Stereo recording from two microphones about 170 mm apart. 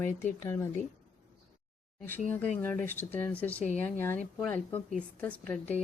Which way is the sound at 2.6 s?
10° left (ahead or behind).